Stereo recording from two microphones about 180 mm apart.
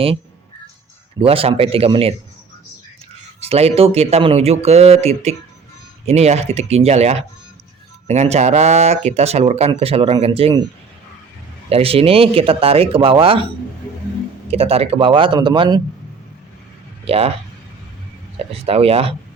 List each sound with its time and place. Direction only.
1.2 s speech: 30° right (ahead or behind)
3.5 s speech: 35° right (ahead or behind)
11.7 s speech: 30° right (ahead or behind)
14.5 s speech: 35° right (ahead or behind)
17.1 s speech: 35° right (ahead or behind)
18.6 s speech: 35° right (ahead or behind)